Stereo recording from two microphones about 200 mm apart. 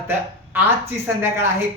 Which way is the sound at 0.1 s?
10° right (ahead or behind).